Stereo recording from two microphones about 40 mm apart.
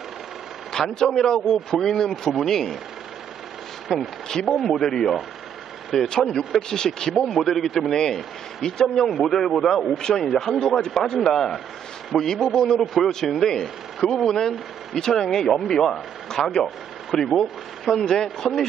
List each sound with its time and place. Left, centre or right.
0.7 s speech: centre
3.8 s speech: centre
12.5 s speech: centre